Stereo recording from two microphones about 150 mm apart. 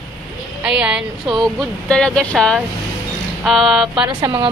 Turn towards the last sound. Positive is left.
turn(degrees=-30)  # may be behind; listen again after turning